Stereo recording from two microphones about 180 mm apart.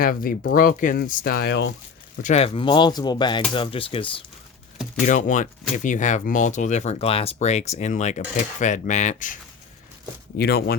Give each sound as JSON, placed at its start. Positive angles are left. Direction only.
{"t": 0.0, "sound": "speech", "side_deg": 50}
{"t": 2.2, "sound": "speech", "side_deg": 35}
{"t": 5.0, "sound": "speech", "side_deg": 45}
{"t": 10.3, "sound": "speech", "side_deg": 60}